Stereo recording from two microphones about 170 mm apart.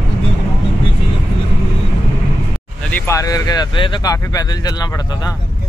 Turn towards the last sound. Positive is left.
turn(degrees=20)  # may be behind; listen again after turning